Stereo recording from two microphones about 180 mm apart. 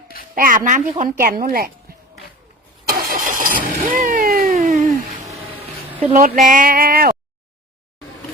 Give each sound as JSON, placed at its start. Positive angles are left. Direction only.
{"t": 0.3, "sound": "speech", "side_deg": -50}
{"t": 2.9, "sound": "vehicle", "side_deg": -50}
{"t": 4.5, "sound": "a sound", "side_deg": -40}
{"t": 6.1, "sound": "speech", "side_deg": -50}